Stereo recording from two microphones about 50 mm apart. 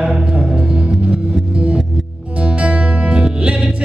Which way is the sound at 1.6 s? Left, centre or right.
Right.